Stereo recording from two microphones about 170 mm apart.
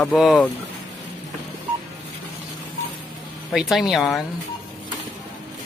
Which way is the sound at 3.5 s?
Centre (ahead or behind).